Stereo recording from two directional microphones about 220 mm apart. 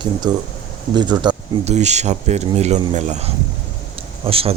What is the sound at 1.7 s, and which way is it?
Speech, 30° right (ahead or behind).